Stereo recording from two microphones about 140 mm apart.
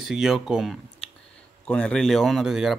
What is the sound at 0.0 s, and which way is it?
Speech, 5° right (ahead or behind).